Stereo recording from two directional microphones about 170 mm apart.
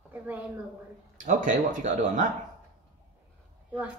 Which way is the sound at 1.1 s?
50° right (ahead or behind).